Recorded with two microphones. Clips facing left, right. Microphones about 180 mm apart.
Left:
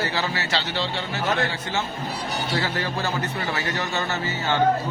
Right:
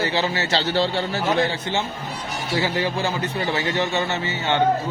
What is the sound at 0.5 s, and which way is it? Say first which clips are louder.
Speech: right 8 dB; 40° right (ahead or behind).